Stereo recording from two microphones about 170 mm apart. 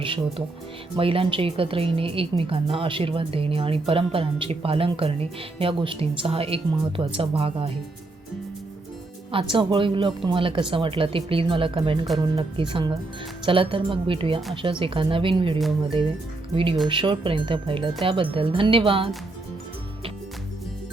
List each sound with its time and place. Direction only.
0.0 s a woman's voice: 30° right (ahead or behind)
9.3 s a woman's voice: 30° right (ahead or behind)
16.9 s a woman's voice: 30° right (ahead or behind)